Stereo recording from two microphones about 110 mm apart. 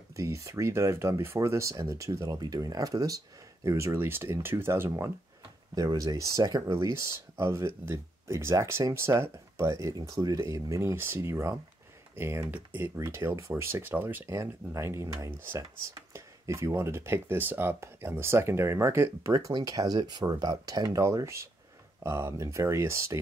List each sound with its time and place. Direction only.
0.1 s speech: 30° right (ahead or behind)
5.8 s speech: 35° right (ahead or behind)